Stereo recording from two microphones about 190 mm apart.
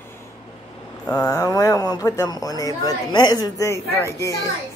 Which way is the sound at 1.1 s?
20° left (ahead or behind).